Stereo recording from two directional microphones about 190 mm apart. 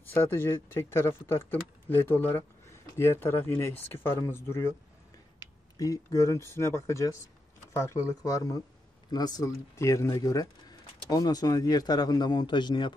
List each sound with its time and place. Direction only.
0.1 s speech: 10° left (ahead or behind)